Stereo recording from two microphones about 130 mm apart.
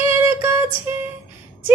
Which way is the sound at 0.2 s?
15° right (ahead or behind).